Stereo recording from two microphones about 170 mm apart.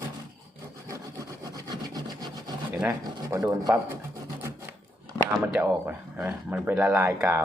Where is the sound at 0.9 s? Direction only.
20° right (ahead or behind).